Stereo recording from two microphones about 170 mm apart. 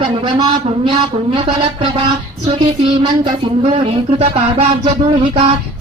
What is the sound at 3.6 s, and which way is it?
Speech, 35° right (ahead or behind).